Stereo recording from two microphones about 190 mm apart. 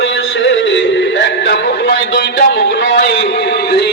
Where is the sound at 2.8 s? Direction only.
65° left (ahead or behind).